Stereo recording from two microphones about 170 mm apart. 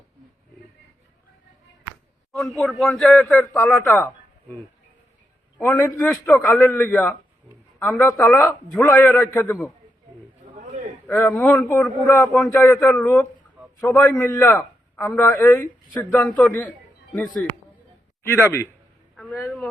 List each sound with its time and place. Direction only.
2.3 s a man's voice: centre (ahead or behind)
3.4 s a man's voice: 15° left (ahead or behind)
5.5 s a man's voice: 10° left (ahead or behind)
11.0 s a man's voice: 10° left (ahead or behind)
12.3 s a man's voice: centre (ahead or behind)
12.6 s a man's voice: 15° left (ahead or behind)
18.2 s a man's voice: 15° left (ahead or behind)